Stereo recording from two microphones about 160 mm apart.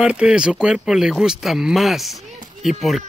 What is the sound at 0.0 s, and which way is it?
Speech, 5° right (ahead or behind).